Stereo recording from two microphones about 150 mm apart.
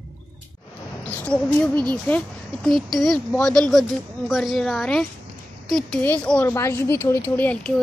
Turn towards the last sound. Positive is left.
turn(degrees=10)  # may be behind; listen again after turning